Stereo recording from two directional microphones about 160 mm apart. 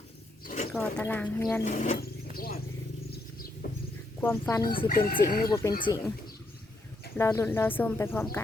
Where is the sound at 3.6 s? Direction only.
70° left (ahead or behind).